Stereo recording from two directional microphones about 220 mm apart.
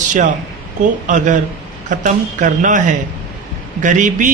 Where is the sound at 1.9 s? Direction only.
35° right (ahead or behind).